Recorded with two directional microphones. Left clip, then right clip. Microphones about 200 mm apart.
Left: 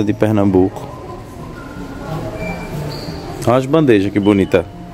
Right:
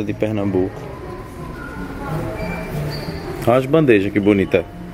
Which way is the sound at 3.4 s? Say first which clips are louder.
Left 1 dB; 15° left (ahead or behind).